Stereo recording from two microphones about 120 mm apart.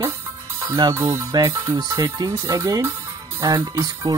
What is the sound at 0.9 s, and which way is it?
Speech, 20° right (ahead or behind).